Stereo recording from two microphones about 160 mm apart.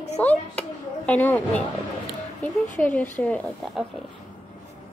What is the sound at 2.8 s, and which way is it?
Speech, 10° left (ahead or behind).